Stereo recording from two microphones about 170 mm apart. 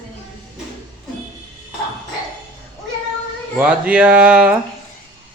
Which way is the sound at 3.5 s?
5° right (ahead or behind).